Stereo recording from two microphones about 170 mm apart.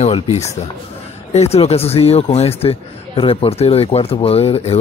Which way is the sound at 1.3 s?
40° left (ahead or behind).